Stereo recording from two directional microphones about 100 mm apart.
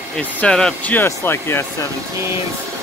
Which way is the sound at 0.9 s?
25° left (ahead or behind).